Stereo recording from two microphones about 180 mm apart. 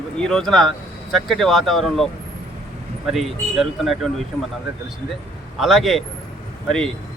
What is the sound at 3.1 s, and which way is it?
Speech, centre (ahead or behind).